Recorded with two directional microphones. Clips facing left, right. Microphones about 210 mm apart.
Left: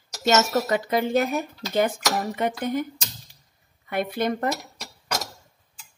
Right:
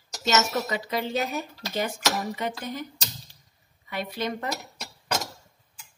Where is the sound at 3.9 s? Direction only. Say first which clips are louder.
Left 6 dB; 55° left (ahead or behind).